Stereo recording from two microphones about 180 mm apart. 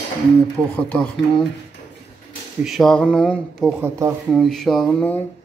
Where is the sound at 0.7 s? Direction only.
5° left (ahead or behind).